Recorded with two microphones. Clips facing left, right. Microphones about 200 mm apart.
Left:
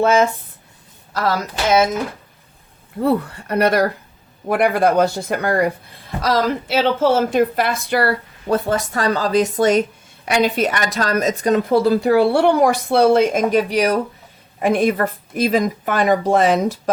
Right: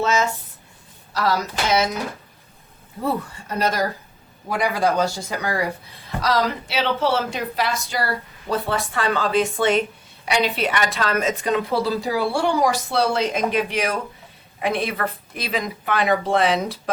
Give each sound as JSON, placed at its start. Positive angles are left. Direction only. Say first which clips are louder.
{"t": 0.0, "sound": "a woman's voice", "louder": "left 6 dB", "side_deg": 55}
{"t": 3.0, "sound": "a woman's voice", "louder": "left 7 dB", "side_deg": 65}